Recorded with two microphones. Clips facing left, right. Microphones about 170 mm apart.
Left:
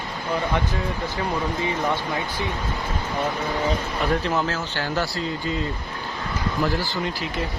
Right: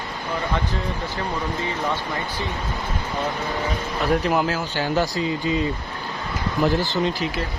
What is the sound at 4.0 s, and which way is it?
Speech, 10° right (ahead or behind).